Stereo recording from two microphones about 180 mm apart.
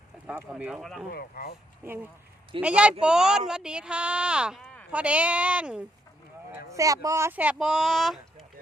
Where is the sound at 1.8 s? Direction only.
10° right (ahead or behind).